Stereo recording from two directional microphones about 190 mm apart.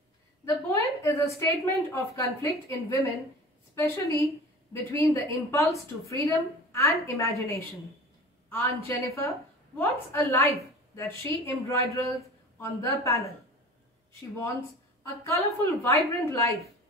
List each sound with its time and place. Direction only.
0.5 s a woman's voice: 15° left (ahead or behind)
15.2 s a woman's voice: 15° left (ahead or behind)